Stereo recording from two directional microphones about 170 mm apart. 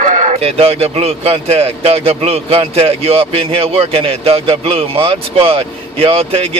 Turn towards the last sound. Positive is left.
turn(degrees=-35)  # may be behind; listen again after turning